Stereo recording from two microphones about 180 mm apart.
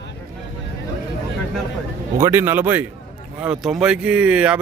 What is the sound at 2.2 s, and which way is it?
Speech, 15° right (ahead or behind).